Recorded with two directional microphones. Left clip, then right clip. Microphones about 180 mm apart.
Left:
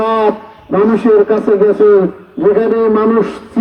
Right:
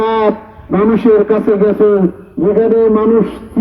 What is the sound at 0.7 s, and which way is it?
Speech, 35° left (ahead or behind).